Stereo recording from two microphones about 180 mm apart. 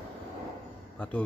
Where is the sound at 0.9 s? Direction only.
5° left (ahead or behind).